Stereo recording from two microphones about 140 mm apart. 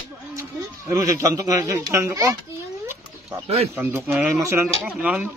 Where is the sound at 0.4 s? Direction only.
20° right (ahead or behind).